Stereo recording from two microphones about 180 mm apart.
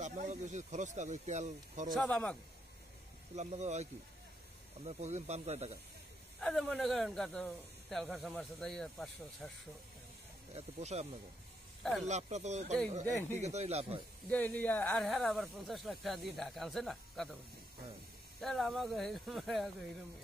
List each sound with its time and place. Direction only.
0.0 s speech: 45° right (ahead or behind)
2.0 s speech: 5° left (ahead or behind)
3.3 s speech: 40° right (ahead or behind)
6.4 s speech: 5° left (ahead or behind)
10.5 s speech: 35° right (ahead or behind)
11.8 s speech: centre (ahead or behind)
12.1 s speech: 40° right (ahead or behind)
13.0 s speech: 15° left (ahead or behind)
13.4 s speech: 40° right (ahead or behind)
14.3 s speech: 10° left (ahead or behind)
18.4 s speech: centre (ahead or behind)